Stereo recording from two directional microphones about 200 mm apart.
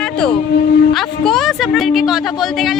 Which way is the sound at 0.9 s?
Centre (ahead or behind).